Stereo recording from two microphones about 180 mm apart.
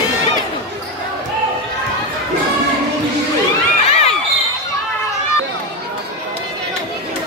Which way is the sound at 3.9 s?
35° left (ahead or behind).